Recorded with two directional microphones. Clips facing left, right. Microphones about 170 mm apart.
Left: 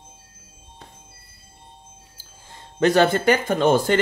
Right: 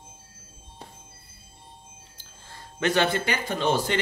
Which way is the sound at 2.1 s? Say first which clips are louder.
Even; 15° left (ahead or behind).